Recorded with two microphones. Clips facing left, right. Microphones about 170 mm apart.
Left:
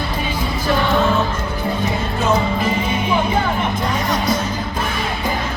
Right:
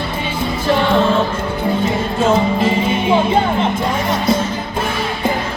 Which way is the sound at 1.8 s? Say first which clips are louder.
Right 4 dB; 25° right (ahead or behind).